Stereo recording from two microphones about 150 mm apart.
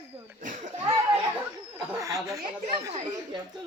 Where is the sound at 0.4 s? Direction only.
55° right (ahead or behind).